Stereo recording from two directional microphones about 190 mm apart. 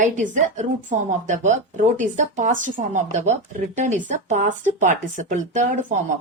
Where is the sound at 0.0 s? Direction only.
40° right (ahead or behind).